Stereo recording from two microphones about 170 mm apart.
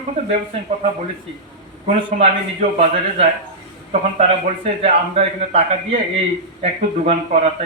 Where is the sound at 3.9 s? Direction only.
40° right (ahead or behind).